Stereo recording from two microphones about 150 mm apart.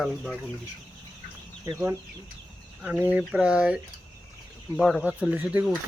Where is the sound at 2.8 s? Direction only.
10° right (ahead or behind).